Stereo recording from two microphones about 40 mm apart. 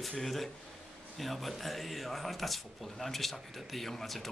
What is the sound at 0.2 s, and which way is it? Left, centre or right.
Speech, centre.